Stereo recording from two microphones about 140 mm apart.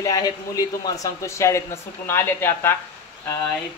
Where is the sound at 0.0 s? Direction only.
25° left (ahead or behind).